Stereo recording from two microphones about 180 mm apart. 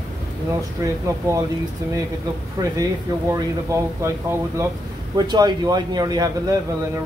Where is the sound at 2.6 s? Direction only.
20° right (ahead or behind).